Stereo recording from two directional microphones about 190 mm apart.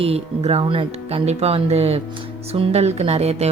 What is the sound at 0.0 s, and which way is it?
Speech, 30° right (ahead or behind).